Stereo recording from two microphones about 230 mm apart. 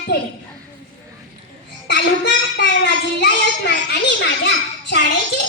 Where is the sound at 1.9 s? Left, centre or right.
Left.